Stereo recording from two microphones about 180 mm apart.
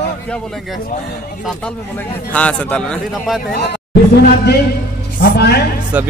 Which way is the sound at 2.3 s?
5° left (ahead or behind).